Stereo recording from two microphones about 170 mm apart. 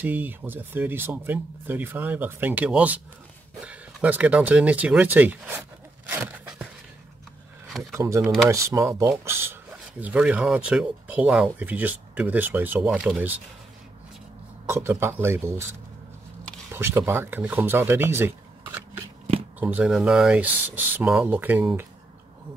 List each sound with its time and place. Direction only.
0.0 s speech: 10° right (ahead or behind)
7.9 s speech: 15° right (ahead or behind)
14.7 s speech: 15° right (ahead or behind)
16.7 s speech: 15° right (ahead or behind)